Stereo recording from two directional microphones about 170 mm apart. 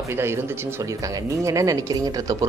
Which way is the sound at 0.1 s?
15° right (ahead or behind).